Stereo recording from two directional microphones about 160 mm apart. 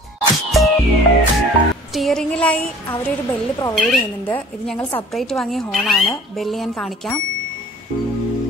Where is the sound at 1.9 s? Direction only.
Centre (ahead or behind).